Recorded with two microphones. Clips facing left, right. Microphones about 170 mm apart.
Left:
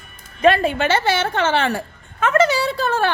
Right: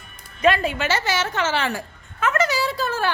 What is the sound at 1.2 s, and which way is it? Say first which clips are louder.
Speech: left 4 dB; 55° left (ahead or behind).